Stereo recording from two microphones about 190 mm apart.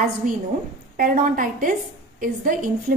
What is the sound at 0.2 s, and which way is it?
A woman's voice, 45° right (ahead or behind).